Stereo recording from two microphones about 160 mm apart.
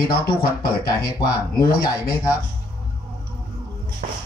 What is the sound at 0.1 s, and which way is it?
Speech, 70° left (ahead or behind).